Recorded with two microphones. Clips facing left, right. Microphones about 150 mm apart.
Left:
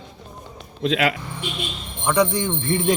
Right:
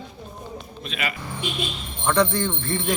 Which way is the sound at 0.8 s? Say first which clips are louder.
Left 11 dB; 90° left.